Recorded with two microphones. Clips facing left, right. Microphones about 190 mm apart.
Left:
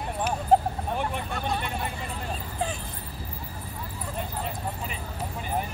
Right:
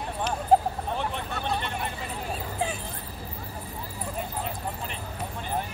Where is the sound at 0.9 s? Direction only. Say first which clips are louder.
Left 1 dB; 10° left (ahead or behind).